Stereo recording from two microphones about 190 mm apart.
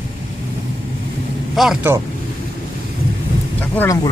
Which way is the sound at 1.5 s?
Centre (ahead or behind).